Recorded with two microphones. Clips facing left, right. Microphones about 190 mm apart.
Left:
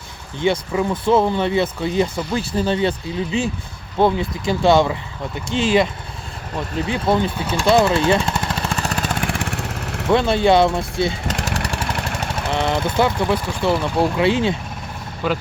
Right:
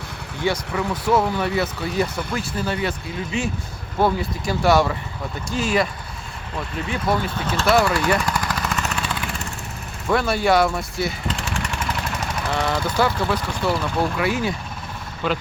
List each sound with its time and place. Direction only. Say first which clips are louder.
0.4 s speech: left 4 dB; 20° left (ahead or behind)
4.0 s speech: left 3 dB; 20° left (ahead or behind)
7.3 s speech: left 2 dB; 10° left (ahead or behind)
7.8 s vehicle: left 3 dB; 25° left (ahead or behind); by 9.3 s 45° left (ahead or behind)
9.3 s vehicle: left 6 dB; 90° left
10.1 s speech: left 4 dB; 25° left (ahead or behind)
11.4 s vehicle: left 3 dB; 40° left (ahead or behind)
12.5 s speech: left 3 dB; 20° left (ahead or behind)
15.2 s speech: left 2 dB; 10° left (ahead or behind)